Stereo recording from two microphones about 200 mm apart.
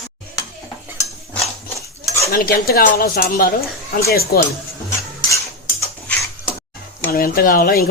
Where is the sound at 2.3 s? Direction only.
50° left (ahead or behind).